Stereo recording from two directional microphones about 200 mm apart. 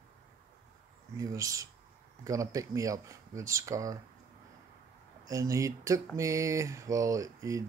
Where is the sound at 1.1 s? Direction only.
15° right (ahead or behind).